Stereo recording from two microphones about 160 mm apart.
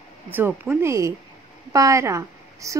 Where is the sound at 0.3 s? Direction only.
15° right (ahead or behind).